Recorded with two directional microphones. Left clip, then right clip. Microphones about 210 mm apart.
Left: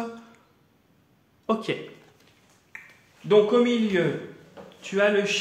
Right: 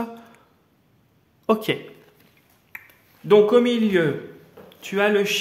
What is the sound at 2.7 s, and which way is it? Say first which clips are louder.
Finger snapping: right 3 dB; 55° right (ahead or behind).